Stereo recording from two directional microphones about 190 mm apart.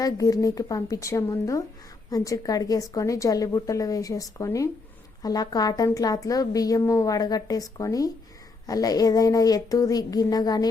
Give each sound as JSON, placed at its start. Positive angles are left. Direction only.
{"t": 0.0, "sound": "a woman's voice", "side_deg": 20}